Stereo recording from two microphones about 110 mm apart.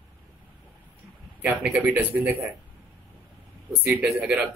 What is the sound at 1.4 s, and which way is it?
Speech, 10° right (ahead or behind).